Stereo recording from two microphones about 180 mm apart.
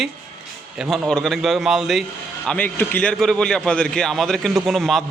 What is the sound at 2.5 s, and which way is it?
A man's voice, 10° left (ahead or behind).